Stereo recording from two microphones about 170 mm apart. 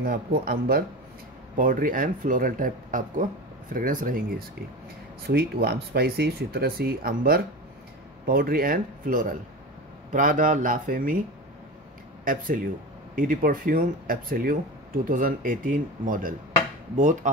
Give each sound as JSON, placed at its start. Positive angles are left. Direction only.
{"t": 0.0, "sound": "speech", "side_deg": -60}
{"t": 12.3, "sound": "speech", "side_deg": -55}